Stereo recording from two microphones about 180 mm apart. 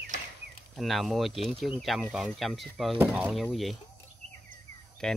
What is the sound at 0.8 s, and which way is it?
Speech, centre (ahead or behind).